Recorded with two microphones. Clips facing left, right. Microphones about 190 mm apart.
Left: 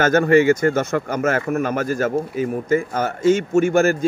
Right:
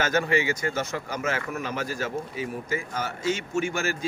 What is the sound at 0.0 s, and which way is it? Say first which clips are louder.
A man's voice: left 10 dB; 50° left (ahead or behind).